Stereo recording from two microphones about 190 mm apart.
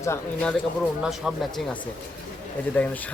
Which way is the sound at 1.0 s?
Centre (ahead or behind).